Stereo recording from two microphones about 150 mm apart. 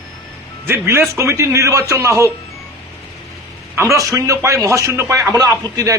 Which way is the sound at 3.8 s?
20° right (ahead or behind).